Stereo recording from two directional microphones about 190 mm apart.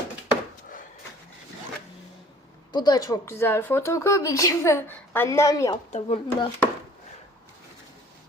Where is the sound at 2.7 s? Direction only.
20° left (ahead or behind).